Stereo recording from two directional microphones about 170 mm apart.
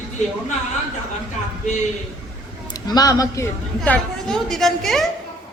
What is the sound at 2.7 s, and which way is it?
Speech, 25° left (ahead or behind).